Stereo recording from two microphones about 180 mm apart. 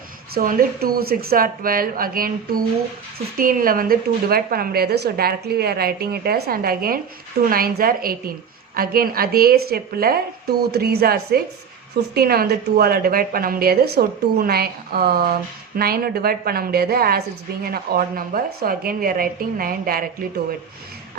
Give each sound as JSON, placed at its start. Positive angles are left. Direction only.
{"t": 0.3, "sound": "a woman's voice", "side_deg": -50}